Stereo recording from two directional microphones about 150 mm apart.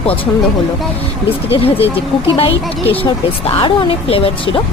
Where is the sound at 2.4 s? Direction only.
40° left (ahead or behind).